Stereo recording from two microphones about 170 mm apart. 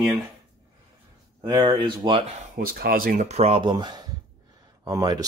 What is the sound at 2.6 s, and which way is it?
Speech, 60° right (ahead or behind).